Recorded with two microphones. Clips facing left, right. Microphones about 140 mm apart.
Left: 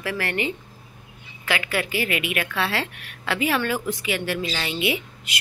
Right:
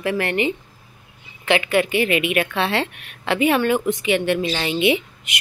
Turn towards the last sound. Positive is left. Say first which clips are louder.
# right 7 dB
turn(degrees=-25)  # may be behind; listen again after turning